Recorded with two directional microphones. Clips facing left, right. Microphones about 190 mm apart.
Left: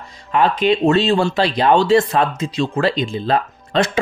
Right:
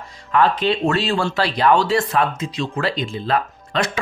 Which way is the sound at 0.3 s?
15° left (ahead or behind).